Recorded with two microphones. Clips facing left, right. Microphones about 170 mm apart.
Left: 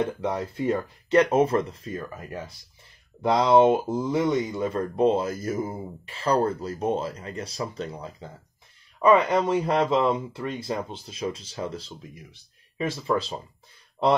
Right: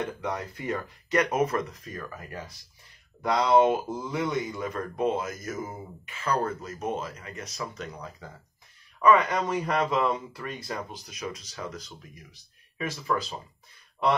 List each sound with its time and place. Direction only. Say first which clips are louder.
0.0 s speech: left 5 dB; 30° left (ahead or behind)